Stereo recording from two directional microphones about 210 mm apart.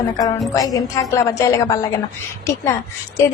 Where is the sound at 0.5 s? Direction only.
15° left (ahead or behind).